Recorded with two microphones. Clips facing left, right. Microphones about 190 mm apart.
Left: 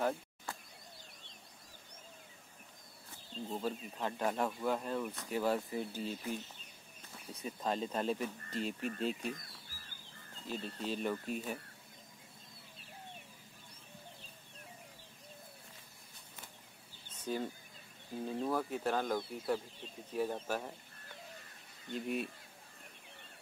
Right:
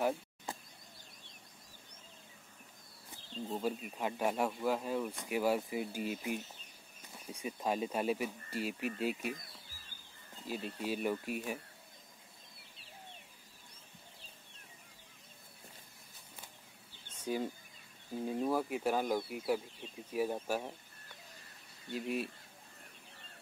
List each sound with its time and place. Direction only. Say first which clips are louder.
0.5 s power windows: right 2 dB; 20° right (ahead or behind)
3.5 s speech: right 2 dB; 10° right (ahead or behind)
17.2 s bird: right 2 dB; 10° right (ahead or behind)
18.1 s speech: right 2 dB; 5° right (ahead or behind)
21.9 s speech: right 1 dB; 5° right (ahead or behind)